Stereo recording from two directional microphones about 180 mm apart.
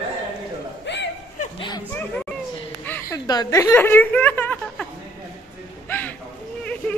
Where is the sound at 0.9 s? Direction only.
75° left (ahead or behind).